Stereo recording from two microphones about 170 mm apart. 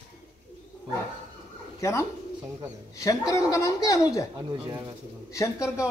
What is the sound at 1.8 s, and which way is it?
A woman's voice, 15° left (ahead or behind).